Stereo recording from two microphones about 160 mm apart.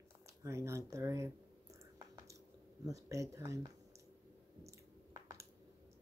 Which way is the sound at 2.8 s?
20° right (ahead or behind).